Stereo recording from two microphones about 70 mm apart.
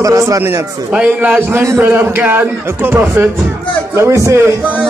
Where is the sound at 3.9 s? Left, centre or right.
Right.